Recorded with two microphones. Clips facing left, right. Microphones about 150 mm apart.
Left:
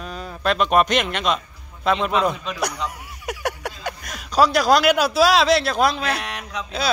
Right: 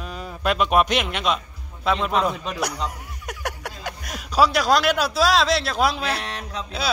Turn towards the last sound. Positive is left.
turn(degrees=-30)  # may be behind; listen again after turning